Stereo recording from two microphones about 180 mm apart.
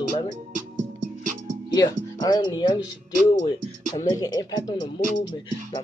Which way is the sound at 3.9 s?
20° left (ahead or behind).